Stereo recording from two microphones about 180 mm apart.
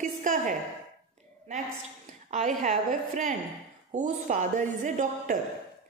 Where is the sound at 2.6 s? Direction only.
45° right (ahead or behind).